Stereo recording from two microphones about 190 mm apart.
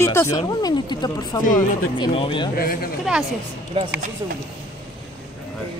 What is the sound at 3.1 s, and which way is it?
Speech, 5° right (ahead or behind).